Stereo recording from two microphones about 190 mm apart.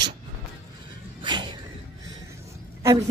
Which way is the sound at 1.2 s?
25° right (ahead or behind).